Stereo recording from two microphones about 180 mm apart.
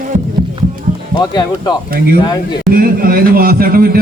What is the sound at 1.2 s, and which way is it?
Speech, 20° left (ahead or behind).